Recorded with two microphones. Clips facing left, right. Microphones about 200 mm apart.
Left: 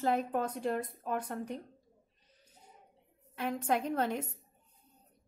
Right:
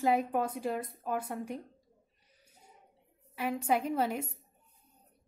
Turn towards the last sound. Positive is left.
turn(degrees=-5)  # may be behind; listen again after turning